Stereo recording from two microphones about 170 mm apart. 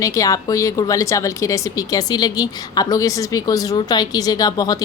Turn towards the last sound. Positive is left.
turn(degrees=20)  # may be behind; listen again after turning